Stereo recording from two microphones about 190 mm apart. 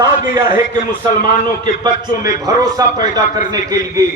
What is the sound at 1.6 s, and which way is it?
A man's voice, 20° right (ahead or behind).